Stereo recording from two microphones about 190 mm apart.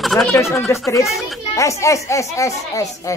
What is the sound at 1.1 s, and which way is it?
Speech, centre (ahead or behind).